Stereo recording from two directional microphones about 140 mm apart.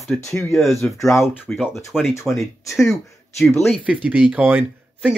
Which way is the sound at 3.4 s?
Centre (ahead or behind).